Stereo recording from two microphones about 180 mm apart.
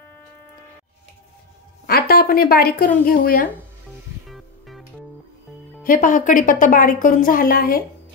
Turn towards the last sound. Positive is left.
turn(degrees=55)  # may be behind; listen again after turning